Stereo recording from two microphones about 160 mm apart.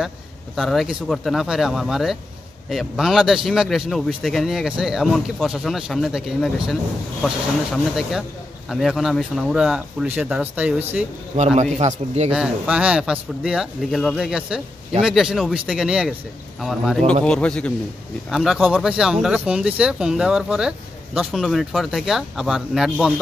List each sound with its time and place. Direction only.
0.6 s a man's voice: centre (ahead or behind)
11.3 s a man's voice: 45° right (ahead or behind)
12.3 s a man's voice: 5° right (ahead or behind)